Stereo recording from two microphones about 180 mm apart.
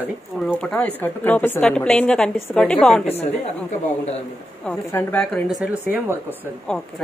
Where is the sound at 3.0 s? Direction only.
35° left (ahead or behind).